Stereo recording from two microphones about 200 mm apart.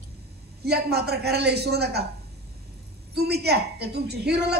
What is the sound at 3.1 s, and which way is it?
A man's voice, 55° right (ahead or behind).